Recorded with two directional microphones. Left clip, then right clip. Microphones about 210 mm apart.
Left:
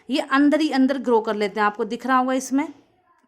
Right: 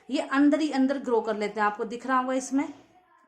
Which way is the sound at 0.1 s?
45° left (ahead or behind).